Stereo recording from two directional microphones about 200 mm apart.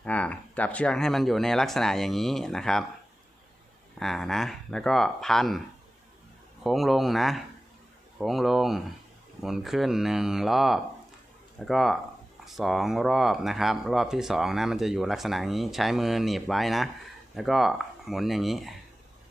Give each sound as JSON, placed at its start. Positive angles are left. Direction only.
{"t": 0.0, "sound": "speech", "side_deg": 5}
{"t": 4.0, "sound": "speech", "side_deg": 0}
{"t": 6.6, "sound": "speech", "side_deg": 0}